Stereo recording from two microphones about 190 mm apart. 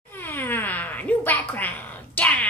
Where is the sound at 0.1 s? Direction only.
10° left (ahead or behind).